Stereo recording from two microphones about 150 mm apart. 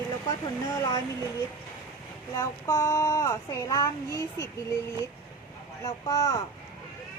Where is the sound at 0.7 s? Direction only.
20° left (ahead or behind).